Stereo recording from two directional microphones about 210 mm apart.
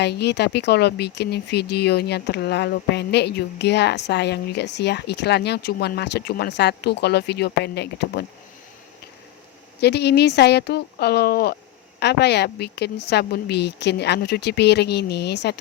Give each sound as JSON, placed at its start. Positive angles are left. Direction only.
{"t": 0.0, "sound": "speech", "side_deg": 50}
{"t": 9.8, "sound": "speech", "side_deg": 50}